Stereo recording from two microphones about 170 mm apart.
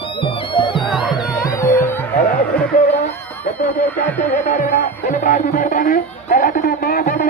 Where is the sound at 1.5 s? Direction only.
15° left (ahead or behind).